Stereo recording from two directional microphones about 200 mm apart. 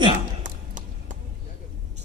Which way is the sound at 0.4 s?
40° right (ahead or behind).